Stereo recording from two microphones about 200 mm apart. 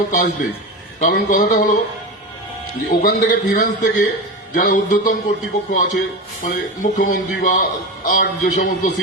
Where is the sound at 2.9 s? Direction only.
40° left (ahead or behind).